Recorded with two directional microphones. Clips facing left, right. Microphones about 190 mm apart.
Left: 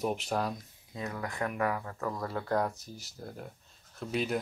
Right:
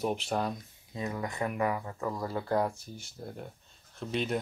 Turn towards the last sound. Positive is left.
turn(degrees=5)  # may be behind; listen again after turning